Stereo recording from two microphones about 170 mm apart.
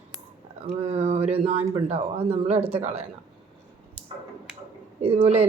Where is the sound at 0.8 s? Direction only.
35° right (ahead or behind).